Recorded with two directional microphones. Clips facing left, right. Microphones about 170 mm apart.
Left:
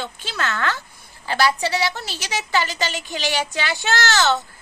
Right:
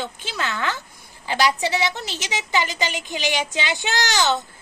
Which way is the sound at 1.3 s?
20° right (ahead or behind).